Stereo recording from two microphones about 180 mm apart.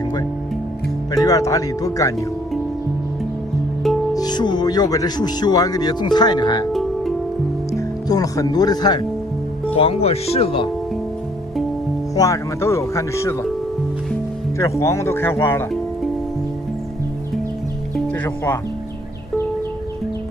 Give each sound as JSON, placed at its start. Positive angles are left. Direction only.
{"t": 1.1, "sound": "speech", "side_deg": 20}
{"t": 4.1, "sound": "speech", "side_deg": 20}
{"t": 6.7, "sound": "music", "side_deg": 0}
{"t": 7.7, "sound": "speech", "side_deg": 20}
{"t": 9.8, "sound": "speech", "side_deg": 35}
{"t": 12.2, "sound": "speech", "side_deg": 15}
{"t": 14.6, "sound": "speech", "side_deg": 15}
{"t": 17.9, "sound": "music", "side_deg": 5}